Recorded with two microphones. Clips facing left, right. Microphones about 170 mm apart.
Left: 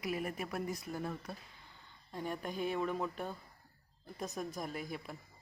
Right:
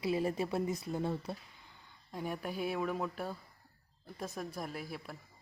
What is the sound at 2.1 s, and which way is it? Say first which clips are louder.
Speech: right 1 dB; 10° right (ahead or behind).